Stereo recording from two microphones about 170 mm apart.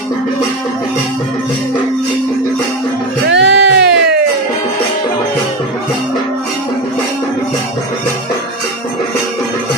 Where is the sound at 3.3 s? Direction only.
90° right.